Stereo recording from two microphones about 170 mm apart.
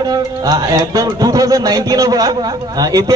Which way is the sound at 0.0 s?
20° right (ahead or behind).